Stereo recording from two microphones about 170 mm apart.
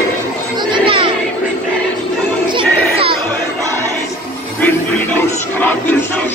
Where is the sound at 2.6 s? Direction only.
35° right (ahead or behind).